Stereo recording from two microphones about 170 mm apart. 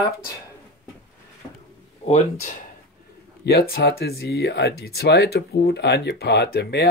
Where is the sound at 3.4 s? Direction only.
65° left (ahead or behind).